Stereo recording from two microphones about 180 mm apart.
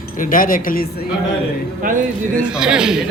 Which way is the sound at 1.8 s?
50° right (ahead or behind).